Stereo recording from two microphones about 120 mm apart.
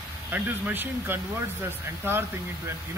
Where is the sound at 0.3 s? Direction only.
15° right (ahead or behind).